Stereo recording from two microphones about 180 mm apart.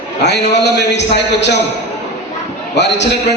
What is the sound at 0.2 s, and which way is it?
A man's voice, 70° left (ahead or behind).